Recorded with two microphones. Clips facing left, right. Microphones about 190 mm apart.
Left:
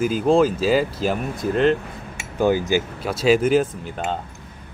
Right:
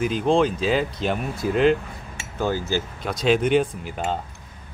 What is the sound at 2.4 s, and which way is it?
Speech, 15° left (ahead or behind).